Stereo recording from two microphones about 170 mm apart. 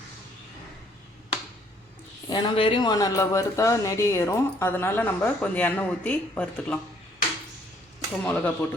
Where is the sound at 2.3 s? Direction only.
30° left (ahead or behind); by 6.7 s 5° left (ahead or behind).